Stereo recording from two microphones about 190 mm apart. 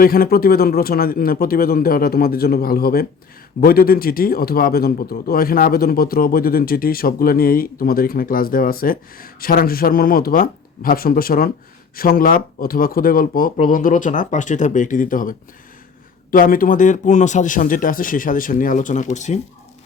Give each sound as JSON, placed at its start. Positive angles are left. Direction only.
{"t": 0.0, "sound": "a man's voice", "side_deg": 50}